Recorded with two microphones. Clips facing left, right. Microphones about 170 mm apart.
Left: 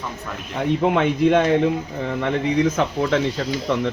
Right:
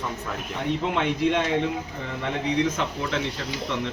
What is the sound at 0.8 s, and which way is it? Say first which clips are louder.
Speech: left 7 dB; 55° left (ahead or behind).